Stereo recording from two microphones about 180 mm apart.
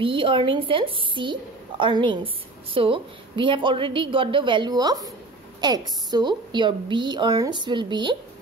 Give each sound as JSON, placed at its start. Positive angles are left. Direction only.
{"t": 0.0, "sound": "a woman's voice", "side_deg": -30}